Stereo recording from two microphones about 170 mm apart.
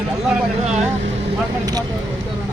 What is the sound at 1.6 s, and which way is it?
Speech, 20° right (ahead or behind).